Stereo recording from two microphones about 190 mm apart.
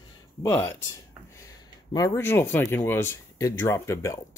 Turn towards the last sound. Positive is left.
turn(degrees=15)  # may be behind; listen again after turning